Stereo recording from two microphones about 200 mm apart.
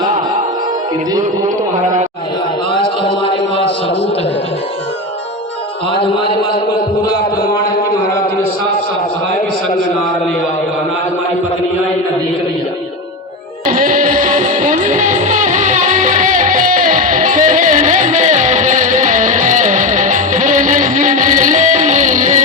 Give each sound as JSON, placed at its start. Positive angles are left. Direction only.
{"t": 2.7, "sound": "a sound", "side_deg": 25}
{"t": 5.9, "sound": "a man's voice", "side_deg": 25}
{"t": 13.7, "sound": "music", "side_deg": -40}